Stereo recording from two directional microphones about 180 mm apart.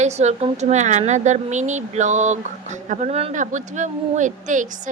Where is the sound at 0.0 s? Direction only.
40° right (ahead or behind).